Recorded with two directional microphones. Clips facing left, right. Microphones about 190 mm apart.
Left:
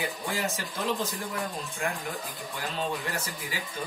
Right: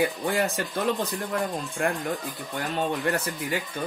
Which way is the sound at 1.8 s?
55° right (ahead or behind).